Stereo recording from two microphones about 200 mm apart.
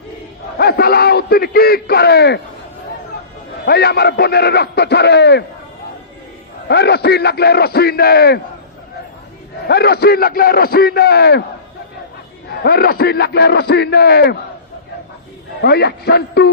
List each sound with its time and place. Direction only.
0.6 s a man's voice: 50° left (ahead or behind)
3.7 s a man's voice: 50° left (ahead or behind)
6.7 s a man's voice: 55° left (ahead or behind)
9.6 s a man's voice: 55° left (ahead or behind)
12.5 s a man's voice: 50° left (ahead or behind)
15.6 s a man's voice: 55° left (ahead or behind)